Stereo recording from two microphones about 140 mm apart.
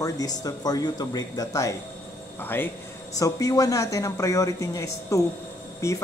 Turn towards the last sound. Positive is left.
turn(degrees=20)  # may be behind; listen again after turning